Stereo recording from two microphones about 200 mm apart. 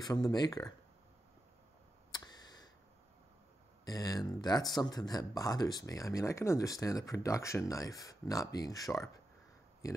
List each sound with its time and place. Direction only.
0.0 s speech: 20° left (ahead or behind)
2.1 s a sound: 20° left (ahead or behind)
3.8 s speech: 20° left (ahead or behind)